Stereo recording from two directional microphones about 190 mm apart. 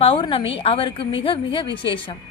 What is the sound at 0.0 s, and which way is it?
Speech, 30° left (ahead or behind).